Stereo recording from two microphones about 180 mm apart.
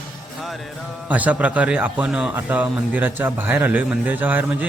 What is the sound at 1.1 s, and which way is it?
Speech, 10° right (ahead or behind).